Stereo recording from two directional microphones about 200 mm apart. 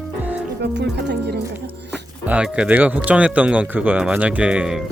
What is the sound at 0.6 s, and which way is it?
Speech, 60° right (ahead or behind).